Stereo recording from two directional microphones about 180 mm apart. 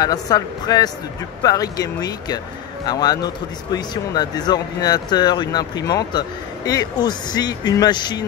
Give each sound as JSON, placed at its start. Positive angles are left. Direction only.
{"t": 0.0, "sound": "speech", "side_deg": 20}